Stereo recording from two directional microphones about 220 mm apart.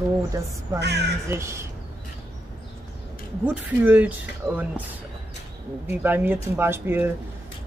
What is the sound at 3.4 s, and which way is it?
A woman's voice, 5° right (ahead or behind).